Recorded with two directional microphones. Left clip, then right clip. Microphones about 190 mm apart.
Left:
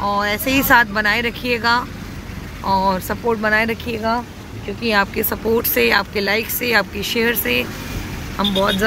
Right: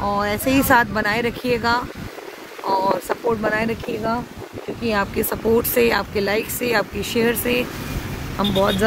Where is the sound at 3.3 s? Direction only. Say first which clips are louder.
Left 6 dB; centre (ahead or behind).